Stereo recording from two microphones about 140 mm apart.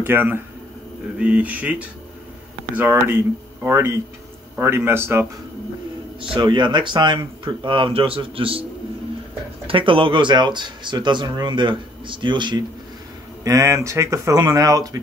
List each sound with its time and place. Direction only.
0.0 s speech: 15° right (ahead or behind)
6.3 s speech: 35° right (ahead or behind)
9.7 s speech: 40° right (ahead or behind)